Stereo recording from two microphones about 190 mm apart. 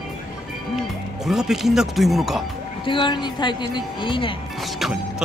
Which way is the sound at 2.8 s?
25° left (ahead or behind).